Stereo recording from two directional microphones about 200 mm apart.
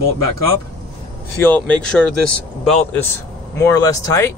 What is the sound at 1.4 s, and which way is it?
Speech, 5° left (ahead or behind).